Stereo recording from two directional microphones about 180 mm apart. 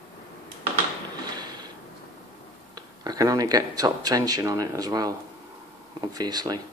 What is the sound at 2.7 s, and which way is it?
Speech, 20° right (ahead or behind).